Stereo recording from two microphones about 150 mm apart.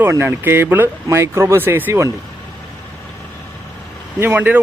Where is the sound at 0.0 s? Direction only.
15° right (ahead or behind).